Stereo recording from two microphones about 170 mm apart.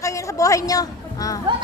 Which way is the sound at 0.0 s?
20° left (ahead or behind).